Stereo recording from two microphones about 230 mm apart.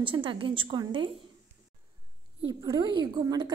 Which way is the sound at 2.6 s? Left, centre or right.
Centre.